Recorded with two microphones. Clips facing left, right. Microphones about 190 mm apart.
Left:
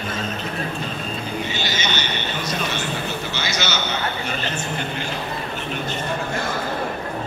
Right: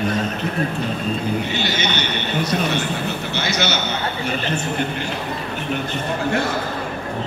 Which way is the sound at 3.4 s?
60° right (ahead or behind).